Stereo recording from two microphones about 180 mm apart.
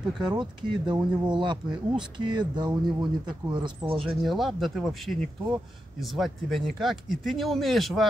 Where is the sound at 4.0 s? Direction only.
Centre (ahead or behind).